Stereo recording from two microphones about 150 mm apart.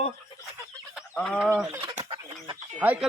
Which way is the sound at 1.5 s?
15° right (ahead or behind).